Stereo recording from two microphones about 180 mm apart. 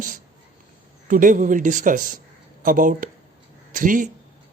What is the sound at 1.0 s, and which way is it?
A man's voice, 50° right (ahead or behind).